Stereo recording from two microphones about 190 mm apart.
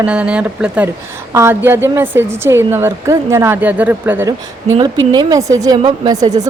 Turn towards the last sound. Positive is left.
turn(degrees=-20)  # may be behind; listen again after turning